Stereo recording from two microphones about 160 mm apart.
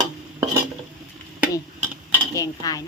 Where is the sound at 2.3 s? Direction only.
20° left (ahead or behind).